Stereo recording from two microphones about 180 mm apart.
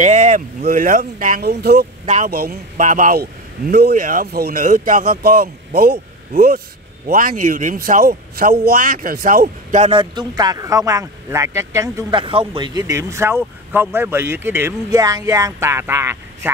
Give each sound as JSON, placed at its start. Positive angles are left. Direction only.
{"t": 0.0, "sound": "speech", "side_deg": -40}
{"t": 2.0, "sound": "a man's voice", "side_deg": -45}
{"t": 9.9, "sound": "speech", "side_deg": -20}